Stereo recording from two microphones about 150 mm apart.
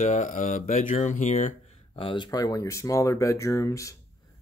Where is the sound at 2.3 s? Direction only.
25° left (ahead or behind).